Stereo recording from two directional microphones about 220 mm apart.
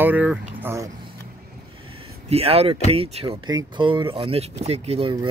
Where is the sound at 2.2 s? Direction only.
25° right (ahead or behind).